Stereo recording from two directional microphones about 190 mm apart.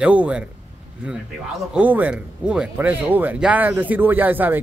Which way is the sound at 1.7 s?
10° right (ahead or behind).